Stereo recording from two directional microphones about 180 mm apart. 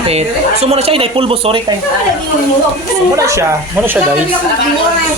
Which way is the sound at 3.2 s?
15° right (ahead or behind).